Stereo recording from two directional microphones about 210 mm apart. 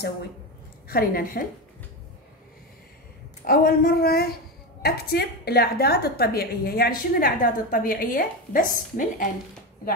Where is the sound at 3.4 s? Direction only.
45° left (ahead or behind).